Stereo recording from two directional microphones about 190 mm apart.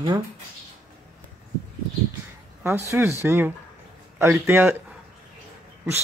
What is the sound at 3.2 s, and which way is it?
Speech, 15° right (ahead or behind).